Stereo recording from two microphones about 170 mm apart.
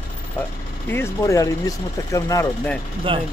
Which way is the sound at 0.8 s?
15° left (ahead or behind).